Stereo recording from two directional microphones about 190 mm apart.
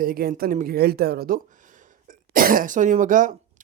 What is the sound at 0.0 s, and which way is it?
A woman's voice, 50° right (ahead or behind).